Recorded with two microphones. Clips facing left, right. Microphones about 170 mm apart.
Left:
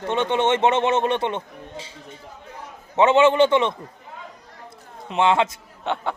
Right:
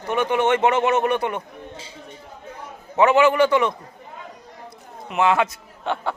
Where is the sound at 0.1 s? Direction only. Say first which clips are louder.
Right 1 dB; 25° left (ahead or behind).